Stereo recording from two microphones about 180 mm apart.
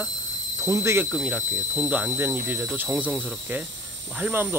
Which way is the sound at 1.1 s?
Centre (ahead or behind).